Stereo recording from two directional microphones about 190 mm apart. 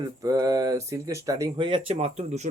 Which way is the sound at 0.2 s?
20° right (ahead or behind).